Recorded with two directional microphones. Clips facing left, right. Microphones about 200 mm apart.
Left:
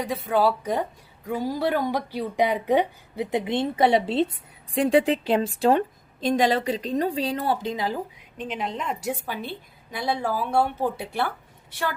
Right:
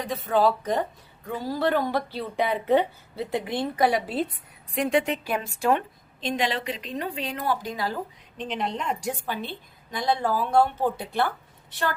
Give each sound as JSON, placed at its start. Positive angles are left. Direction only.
{"t": 0.0, "sound": "a woman's voice", "side_deg": 10}
{"t": 8.4, "sound": "a woman's voice", "side_deg": 5}